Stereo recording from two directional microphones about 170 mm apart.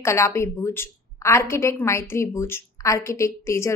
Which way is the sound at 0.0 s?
15° left (ahead or behind).